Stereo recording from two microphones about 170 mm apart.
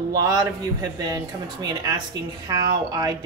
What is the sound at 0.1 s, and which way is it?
Speech, 20° right (ahead or behind).